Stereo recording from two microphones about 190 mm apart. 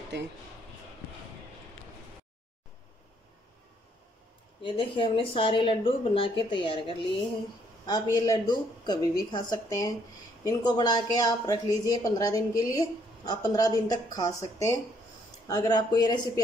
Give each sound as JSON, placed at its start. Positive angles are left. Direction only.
{"t": 4.7, "sound": "speech", "side_deg": 25}
{"t": 7.8, "sound": "speech", "side_deg": 20}